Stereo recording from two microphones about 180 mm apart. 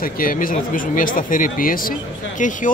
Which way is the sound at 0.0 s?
50° left (ahead or behind).